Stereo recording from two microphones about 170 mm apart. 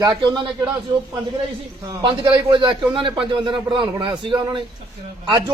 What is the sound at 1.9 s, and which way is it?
A man's voice, 25° right (ahead or behind).